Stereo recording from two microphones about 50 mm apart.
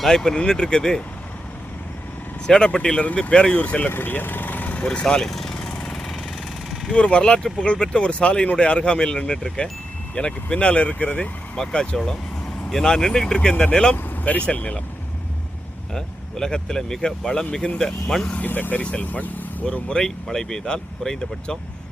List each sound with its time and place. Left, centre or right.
0.0 s speech: centre
2.5 s speech: centre
3.8 s speech: left
4.9 s speech: centre
5.3 s vehicle: centre
5.7 s vehicle: left
6.9 s speech: left
15.9 s speech: centre
18.4 s speech: left
18.8 s speech: left
19.6 s speech: centre